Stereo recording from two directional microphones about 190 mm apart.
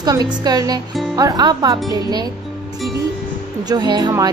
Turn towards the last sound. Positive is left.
turn(degrees=-20)  # may be behind; listen again after turning